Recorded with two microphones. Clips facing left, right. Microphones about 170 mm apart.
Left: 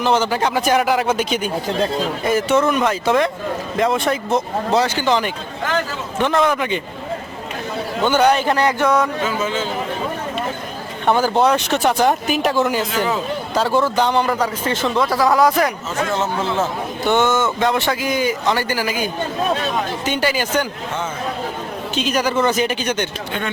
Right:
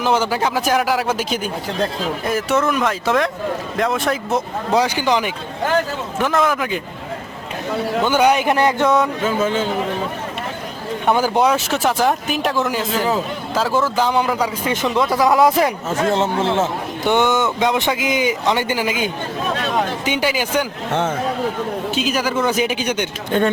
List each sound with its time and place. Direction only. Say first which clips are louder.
0.0 s speech: left 1 dB; 10° right (ahead or behind)
8.0 s a man's voice: left 1 dB; 10° right (ahead or behind)
9.2 s speech: right 3 dB; 55° right (ahead or behind)
11.0 s a man's voice: left 1 dB; 10° right (ahead or behind); by 16.5 s 30° right (ahead or behind)
17.1 s speech: even; 15° right (ahead or behind)
21.9 s speech: left 3 dB; 5° right (ahead or behind)